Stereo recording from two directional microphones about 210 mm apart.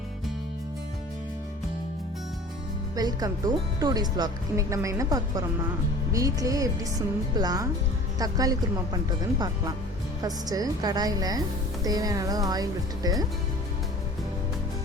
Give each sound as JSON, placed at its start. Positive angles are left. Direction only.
{"t": 2.9, "sound": "a woman's voice", "side_deg": -20}
{"t": 10.2, "sound": "a woman's voice", "side_deg": -15}